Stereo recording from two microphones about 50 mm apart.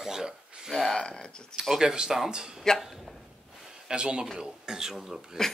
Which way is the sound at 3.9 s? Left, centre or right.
Centre.